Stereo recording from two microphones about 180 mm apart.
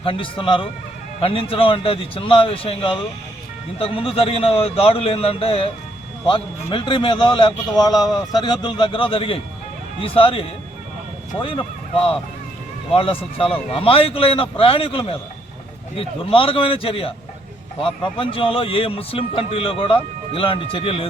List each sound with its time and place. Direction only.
0.0 s a man's voice: 30° left (ahead or behind)
12.9 s a man's voice: 30° left (ahead or behind)